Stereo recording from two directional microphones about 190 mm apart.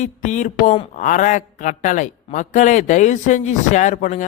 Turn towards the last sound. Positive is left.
turn(degrees=40)  # may be behind; listen again after turning